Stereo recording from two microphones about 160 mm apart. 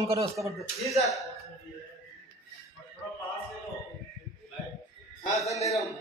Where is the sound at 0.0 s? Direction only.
20° right (ahead or behind).